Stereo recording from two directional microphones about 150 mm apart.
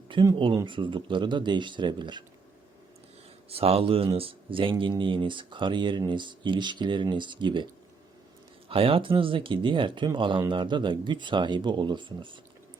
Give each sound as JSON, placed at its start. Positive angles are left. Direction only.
{"t": 0.3, "sound": "speech", "side_deg": -35}
{"t": 3.5, "sound": "speech", "side_deg": -40}
{"t": 8.7, "sound": "speech", "side_deg": -35}